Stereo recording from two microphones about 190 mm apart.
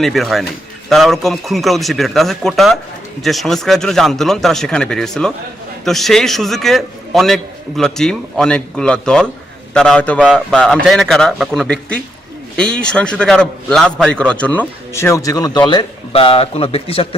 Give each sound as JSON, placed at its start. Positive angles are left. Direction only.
{"t": 0.0, "sound": "a man's voice", "side_deg": 0}